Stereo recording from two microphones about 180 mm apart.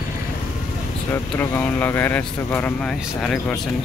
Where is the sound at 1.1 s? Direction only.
10° left (ahead or behind).